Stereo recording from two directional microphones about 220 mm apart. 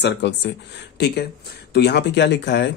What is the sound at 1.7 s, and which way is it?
Speech, 50° left (ahead or behind).